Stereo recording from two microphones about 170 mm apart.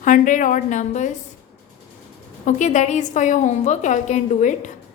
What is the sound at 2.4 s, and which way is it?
A woman's voice, 45° left (ahead or behind).